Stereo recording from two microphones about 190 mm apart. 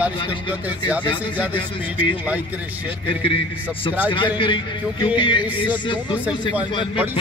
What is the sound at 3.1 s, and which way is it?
Speech, 30° left (ahead or behind).